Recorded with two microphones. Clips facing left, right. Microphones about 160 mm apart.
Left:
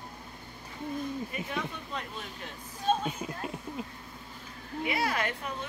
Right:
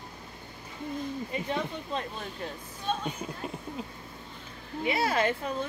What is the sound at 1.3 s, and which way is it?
Speech, 25° right (ahead or behind).